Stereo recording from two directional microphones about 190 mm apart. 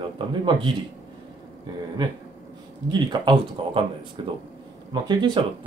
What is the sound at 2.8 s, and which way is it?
Speech, 25° right (ahead or behind).